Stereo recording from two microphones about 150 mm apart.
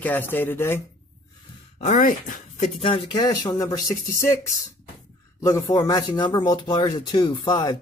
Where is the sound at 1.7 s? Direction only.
55° left (ahead or behind).